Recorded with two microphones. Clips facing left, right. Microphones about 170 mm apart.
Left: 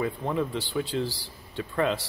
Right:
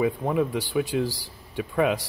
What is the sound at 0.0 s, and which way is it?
Speech, 10° right (ahead or behind).